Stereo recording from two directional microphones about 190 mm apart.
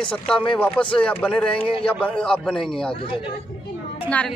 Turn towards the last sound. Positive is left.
turn(degrees=5)  # may be behind; listen again after turning